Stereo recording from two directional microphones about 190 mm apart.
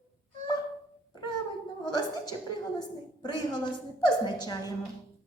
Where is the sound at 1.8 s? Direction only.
20° left (ahead or behind).